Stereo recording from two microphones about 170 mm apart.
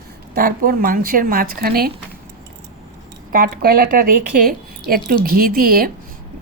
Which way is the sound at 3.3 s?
55° right (ahead or behind).